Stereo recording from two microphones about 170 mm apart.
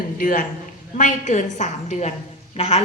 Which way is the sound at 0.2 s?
50° left (ahead or behind).